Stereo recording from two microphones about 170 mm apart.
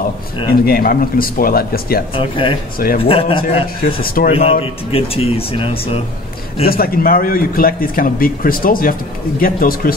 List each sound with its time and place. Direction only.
0.7 s a man's voice: 60° left (ahead or behind)
2.1 s speech: 30° left (ahead or behind)
3.8 s a man's voice: 60° left (ahead or behind)
4.3 s speech: 35° left (ahead or behind)
6.6 s a man's voice: 60° left (ahead or behind)